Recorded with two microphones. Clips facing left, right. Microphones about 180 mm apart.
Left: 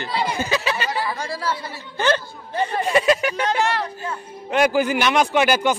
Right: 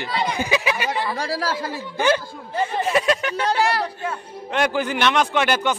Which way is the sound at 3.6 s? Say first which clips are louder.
Right 2 dB; 35° right (ahead or behind).